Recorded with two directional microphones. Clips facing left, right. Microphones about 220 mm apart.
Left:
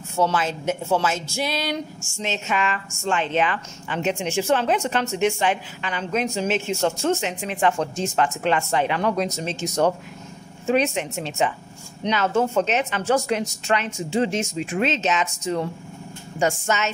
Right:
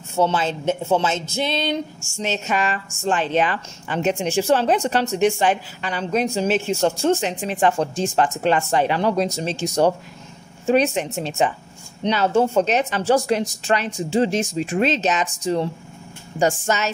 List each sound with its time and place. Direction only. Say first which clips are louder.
0.1 s speech: right 2 dB; 25° right (ahead or behind)
2.2 s a woman's voice: right 2 dB; 40° right (ahead or behind)